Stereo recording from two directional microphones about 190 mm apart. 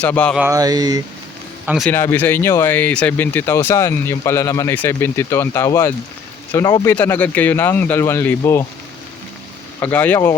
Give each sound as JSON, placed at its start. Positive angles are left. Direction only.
{"t": 0.0, "sound": "speech", "side_deg": 5}
{"t": 0.3, "sound": "a sound", "side_deg": -15}
{"t": 1.6, "sound": "speech", "side_deg": -5}
{"t": 1.9, "sound": "speech", "side_deg": 10}
{"t": 9.8, "sound": "speech", "side_deg": 10}